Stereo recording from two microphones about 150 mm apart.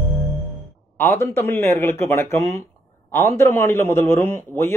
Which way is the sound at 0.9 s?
15° left (ahead or behind).